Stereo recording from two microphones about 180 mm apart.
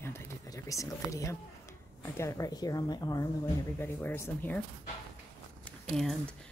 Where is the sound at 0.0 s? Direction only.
15° left (ahead or behind).